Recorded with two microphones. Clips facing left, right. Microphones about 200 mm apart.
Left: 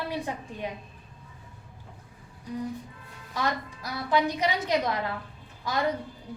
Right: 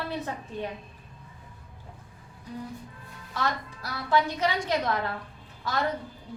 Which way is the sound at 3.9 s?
15° left (ahead or behind).